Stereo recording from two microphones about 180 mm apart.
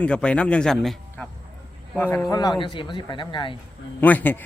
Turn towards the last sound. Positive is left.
turn(degrees=10)  # may be behind; listen again after turning